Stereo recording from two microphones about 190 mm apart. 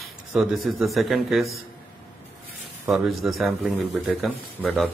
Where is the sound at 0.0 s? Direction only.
Centre (ahead or behind).